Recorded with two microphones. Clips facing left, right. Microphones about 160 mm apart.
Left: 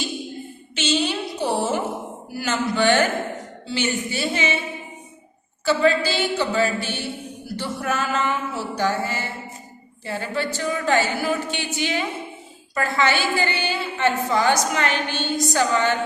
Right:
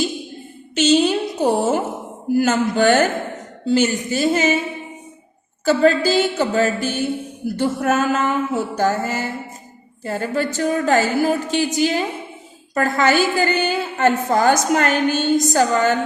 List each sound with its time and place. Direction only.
0.8 s a sound: 45° right (ahead or behind)
2.3 s a woman's voice: 45° right (ahead or behind)
5.6 s a woman's voice: 45° right (ahead or behind)